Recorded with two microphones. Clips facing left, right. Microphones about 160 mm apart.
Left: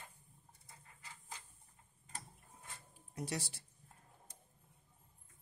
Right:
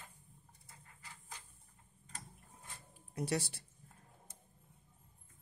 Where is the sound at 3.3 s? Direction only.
65° right (ahead or behind).